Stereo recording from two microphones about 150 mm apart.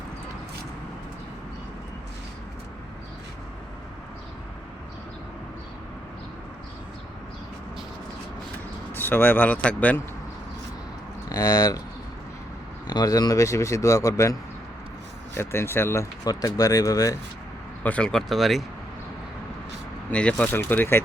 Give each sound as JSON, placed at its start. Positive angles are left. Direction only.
{"t": 8.9, "sound": "speech", "side_deg": 15}
{"t": 11.3, "sound": "speech", "side_deg": 20}
{"t": 12.9, "sound": "speech", "side_deg": 25}
{"t": 15.4, "sound": "speech", "side_deg": 15}
{"t": 17.8, "sound": "speech", "side_deg": 5}
{"t": 20.1, "sound": "speech", "side_deg": 5}